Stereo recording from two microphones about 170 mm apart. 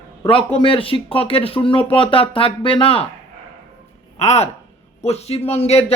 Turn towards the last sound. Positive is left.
turn(degrees=40)  # may be behind; listen again after turning